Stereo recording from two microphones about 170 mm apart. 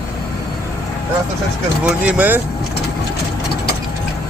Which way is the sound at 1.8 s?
10° right (ahead or behind).